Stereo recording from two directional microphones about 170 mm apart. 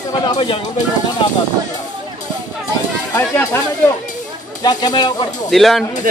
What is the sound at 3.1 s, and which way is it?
Speech, 15° left (ahead or behind).